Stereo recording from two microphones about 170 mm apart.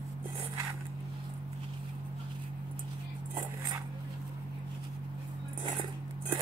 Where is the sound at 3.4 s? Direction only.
25° right (ahead or behind).